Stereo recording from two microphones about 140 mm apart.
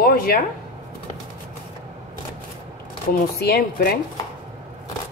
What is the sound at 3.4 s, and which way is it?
Speech, 90° left.